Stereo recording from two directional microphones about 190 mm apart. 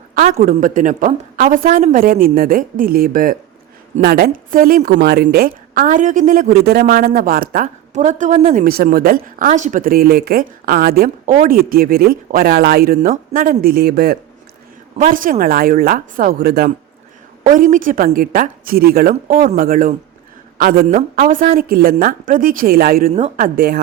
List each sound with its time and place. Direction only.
0.1 s a woman's voice: 45° right (ahead or behind)
9.5 s a woman's voice: 40° right (ahead or behind); by 14.2 s 55° right (ahead or behind)
14.9 s a woman's voice: 45° right (ahead or behind)
17.5 s a woman's voice: 45° right (ahead or behind)
19.1 s a woman's voice: 40° right (ahead or behind)
23.1 s a woman's voice: 35° right (ahead or behind)
23.6 s a woman's voice: 55° right (ahead or behind)